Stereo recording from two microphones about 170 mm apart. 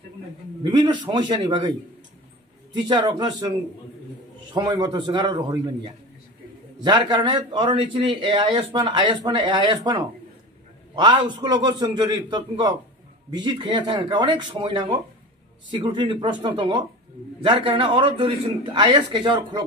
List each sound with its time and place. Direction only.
0.7 s a man's voice: 25° right (ahead or behind)
2.7 s a man's voice: 25° right (ahead or behind)
4.6 s a man's voice: 25° right (ahead or behind)